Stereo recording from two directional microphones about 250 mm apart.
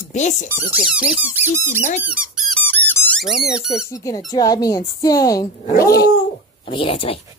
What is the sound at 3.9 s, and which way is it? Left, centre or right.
Speech, centre.